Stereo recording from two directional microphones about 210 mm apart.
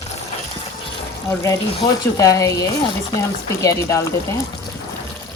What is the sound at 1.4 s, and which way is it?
Speech, 15° left (ahead or behind).